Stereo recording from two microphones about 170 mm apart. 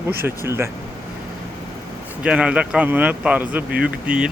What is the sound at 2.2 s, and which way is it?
Speech, 5° right (ahead or behind).